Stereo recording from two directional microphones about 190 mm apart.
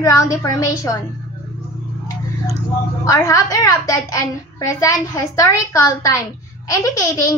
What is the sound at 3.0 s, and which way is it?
A child's voice, 15° left (ahead or behind).